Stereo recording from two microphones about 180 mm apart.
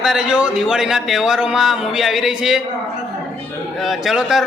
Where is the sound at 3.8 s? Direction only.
Centre (ahead or behind).